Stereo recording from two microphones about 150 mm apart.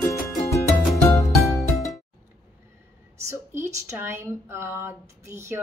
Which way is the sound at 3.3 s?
20° right (ahead or behind).